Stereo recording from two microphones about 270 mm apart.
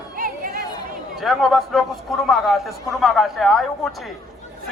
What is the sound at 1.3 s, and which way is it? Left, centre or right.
A man's voice, centre.